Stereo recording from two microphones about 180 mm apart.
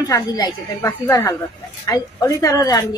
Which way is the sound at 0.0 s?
20° left (ahead or behind).